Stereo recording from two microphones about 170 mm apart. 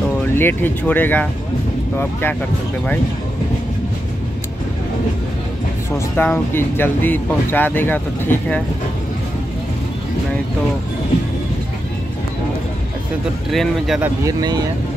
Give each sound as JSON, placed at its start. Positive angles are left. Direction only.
{"t": 0.4, "sound": "speech", "side_deg": 10}
{"t": 5.9, "sound": "speech", "side_deg": 15}
{"t": 13.5, "sound": "speech", "side_deg": 0}
{"t": 14.2, "sound": "speech", "side_deg": -25}